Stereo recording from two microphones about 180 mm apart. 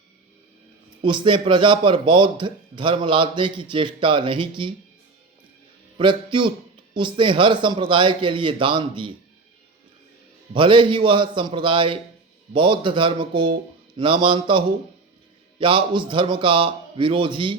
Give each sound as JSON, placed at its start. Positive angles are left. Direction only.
{"t": 1.0, "sound": "a man's voice", "side_deg": -25}
{"t": 6.0, "sound": "a man's voice", "side_deg": -25}
{"t": 10.5, "sound": "a man's voice", "side_deg": -25}